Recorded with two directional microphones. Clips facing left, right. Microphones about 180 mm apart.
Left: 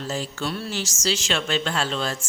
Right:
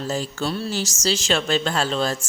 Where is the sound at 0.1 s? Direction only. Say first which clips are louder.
Right 3 dB; 40° right (ahead or behind).